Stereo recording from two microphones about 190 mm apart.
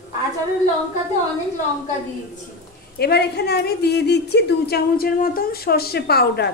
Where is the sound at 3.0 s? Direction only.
60° left (ahead or behind).